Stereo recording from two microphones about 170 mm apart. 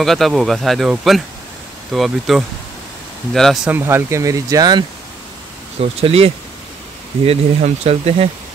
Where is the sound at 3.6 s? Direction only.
15° right (ahead or behind).